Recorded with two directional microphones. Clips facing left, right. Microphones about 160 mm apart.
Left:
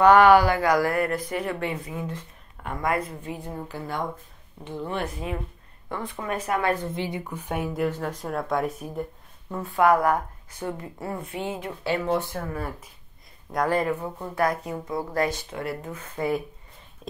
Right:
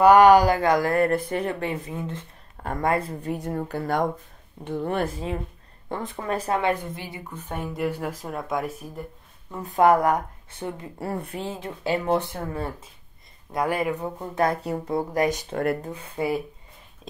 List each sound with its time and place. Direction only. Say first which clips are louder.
0.0 s speech: right 2 dB; 10° right (ahead or behind)
0.3 s speech: right 1 dB; 40° right (ahead or behind)
0.6 s speech: right 2 dB; 25° right (ahead or behind)
3.4 s speech: right 6 dB; 50° right (ahead or behind)
5.9 s speech: right 2 dB; 30° right (ahead or behind)
7.2 s speech: left 3 dB; 10° left (ahead or behind)
7.8 s speech: left 1 dB; 10° right (ahead or behind)
9.6 s speech: right 2 dB; 20° right (ahead or behind)
13.5 s speech: left 1 dB; 10° right (ahead or behind); by 15.0 s 35° right (ahead or behind)
15.1 s speech: right 2 dB; 15° right (ahead or behind)
15.5 s speech: right 7 dB; 50° right (ahead or behind)
16.2 s speech: right 1 dB; 15° right (ahead or behind)
17.0 s a sound: left 3 dB; centre (ahead or behind)